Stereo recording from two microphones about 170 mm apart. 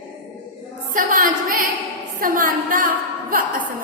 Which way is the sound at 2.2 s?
55° right (ahead or behind).